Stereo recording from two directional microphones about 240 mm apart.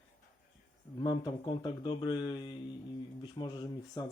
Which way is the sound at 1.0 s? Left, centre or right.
Centre.